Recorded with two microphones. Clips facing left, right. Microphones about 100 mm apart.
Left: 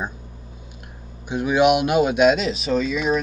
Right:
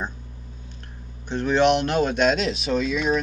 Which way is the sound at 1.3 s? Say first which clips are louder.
Left 2 dB; 10° left (ahead or behind).